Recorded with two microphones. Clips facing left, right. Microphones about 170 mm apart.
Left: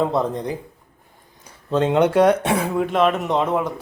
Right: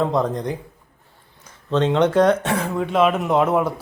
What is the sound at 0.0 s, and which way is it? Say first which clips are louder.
Speech: even; 5° left (ahead or behind).